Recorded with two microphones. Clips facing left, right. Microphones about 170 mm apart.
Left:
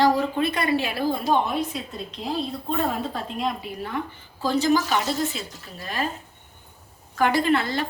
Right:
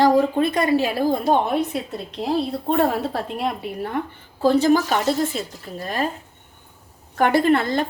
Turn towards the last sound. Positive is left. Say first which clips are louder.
# right 4 dB
turn(degrees=-45)  # may be behind; listen again after turning